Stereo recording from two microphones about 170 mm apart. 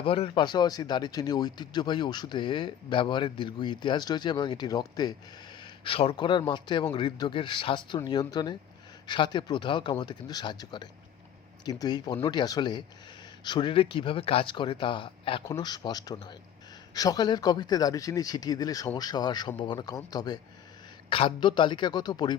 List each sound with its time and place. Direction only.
0.0 s speech: 30° left (ahead or behind)